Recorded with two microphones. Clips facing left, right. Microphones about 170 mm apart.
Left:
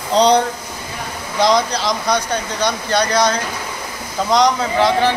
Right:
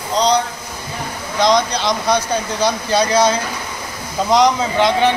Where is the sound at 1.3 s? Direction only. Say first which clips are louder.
Even; 5° left (ahead or behind).